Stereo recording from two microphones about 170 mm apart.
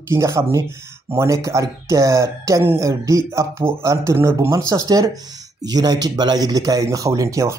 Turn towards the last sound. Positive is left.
turn(degrees=-20)  # may be behind; listen again after turning